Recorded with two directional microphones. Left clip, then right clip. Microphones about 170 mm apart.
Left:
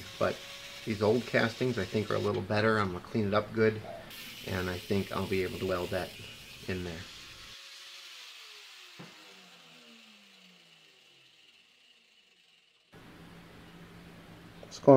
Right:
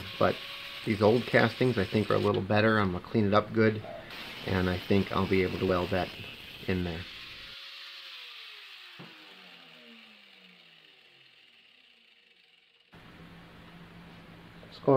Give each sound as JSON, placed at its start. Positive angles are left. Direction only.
{"t": 0.8, "sound": "speech", "side_deg": -45}
{"t": 14.9, "sound": "speech", "side_deg": 60}